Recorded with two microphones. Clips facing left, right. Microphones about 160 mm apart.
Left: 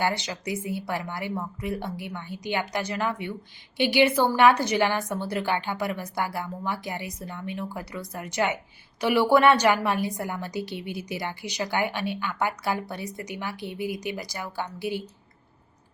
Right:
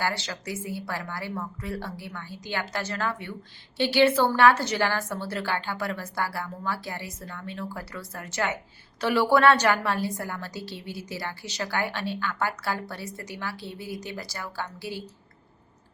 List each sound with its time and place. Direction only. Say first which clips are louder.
0.0 s a woman's voice: left 3 dB; 15° left (ahead or behind)